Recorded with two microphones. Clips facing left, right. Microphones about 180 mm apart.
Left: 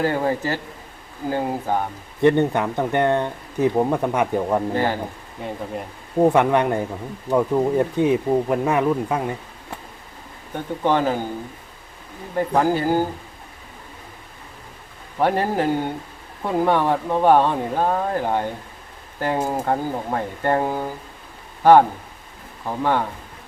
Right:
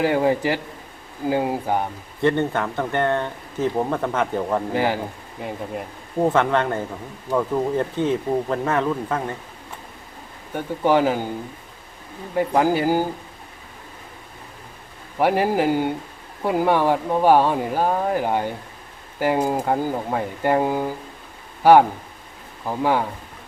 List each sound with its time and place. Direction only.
0.0 s speech: 15° right (ahead or behind)
2.2 s speech: 15° left (ahead or behind)
4.7 s speech: 10° right (ahead or behind)
6.1 s speech: 15° left (ahead or behind)
10.8 s speech: 10° right (ahead or behind)
12.4 s speech: 10° right (ahead or behind)
15.2 s speech: 10° right (ahead or behind)